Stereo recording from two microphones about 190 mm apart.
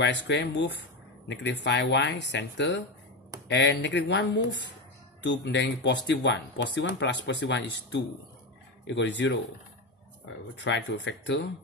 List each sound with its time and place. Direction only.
0.0 s speech: 65° left (ahead or behind)
10.5 s speech: 70° left (ahead or behind)